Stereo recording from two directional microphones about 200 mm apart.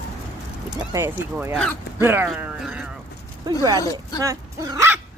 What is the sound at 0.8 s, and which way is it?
Speech, 15° right (ahead or behind).